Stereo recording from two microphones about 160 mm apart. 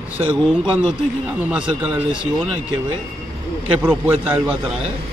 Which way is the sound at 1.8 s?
10° right (ahead or behind).